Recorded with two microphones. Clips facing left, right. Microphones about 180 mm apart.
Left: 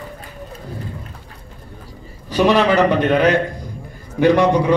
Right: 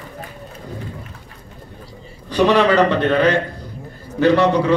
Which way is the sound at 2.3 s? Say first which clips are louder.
Even; 10° left (ahead or behind).